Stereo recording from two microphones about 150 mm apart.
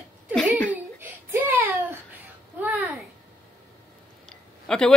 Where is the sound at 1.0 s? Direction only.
15° right (ahead or behind).